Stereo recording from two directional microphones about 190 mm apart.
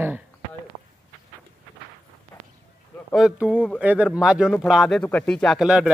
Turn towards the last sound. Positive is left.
turn(degrees=-5)  # may be behind; listen again after turning